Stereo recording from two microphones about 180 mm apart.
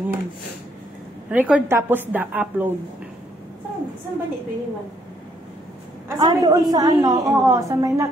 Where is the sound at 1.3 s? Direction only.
10° right (ahead or behind).